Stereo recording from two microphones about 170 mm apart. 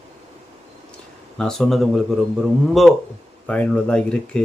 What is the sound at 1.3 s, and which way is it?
Speech, 5° left (ahead or behind).